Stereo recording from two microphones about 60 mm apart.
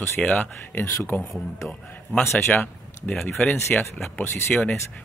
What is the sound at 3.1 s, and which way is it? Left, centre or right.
Speech, centre.